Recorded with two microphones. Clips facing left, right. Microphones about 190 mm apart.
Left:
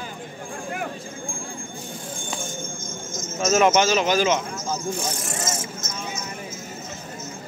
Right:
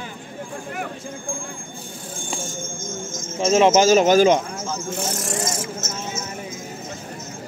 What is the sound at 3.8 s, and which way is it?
Speech, 45° right (ahead or behind).